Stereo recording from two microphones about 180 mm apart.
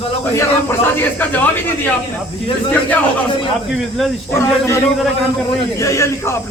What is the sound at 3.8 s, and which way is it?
Speech, centre (ahead or behind).